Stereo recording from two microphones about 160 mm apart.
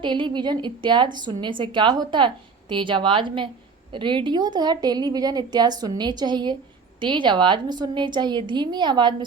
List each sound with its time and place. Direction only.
0.0 s a woman's voice: 30° right (ahead or behind)